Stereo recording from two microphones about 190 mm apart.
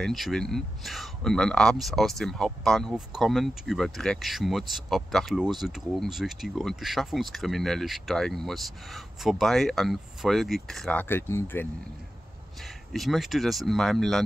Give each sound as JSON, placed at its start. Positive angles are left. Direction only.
{"t": 0.0, "sound": "speech", "side_deg": 0}
{"t": 12.6, "sound": "speech", "side_deg": 0}